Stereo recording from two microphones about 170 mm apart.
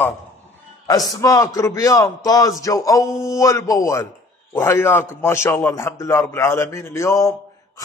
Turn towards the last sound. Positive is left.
turn(degrees=15)  # may be behind; listen again after turning